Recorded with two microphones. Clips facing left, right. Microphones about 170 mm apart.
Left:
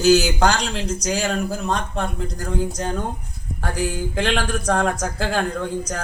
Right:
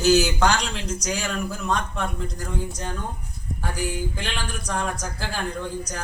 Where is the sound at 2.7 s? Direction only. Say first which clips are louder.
Left 6 dB; 90° left.